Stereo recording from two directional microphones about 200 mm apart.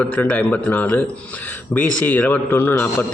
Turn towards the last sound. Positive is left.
turn(degrees=10)  # may be behind; listen again after turning